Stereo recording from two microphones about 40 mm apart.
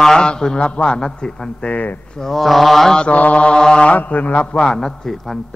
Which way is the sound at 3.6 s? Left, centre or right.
Centre.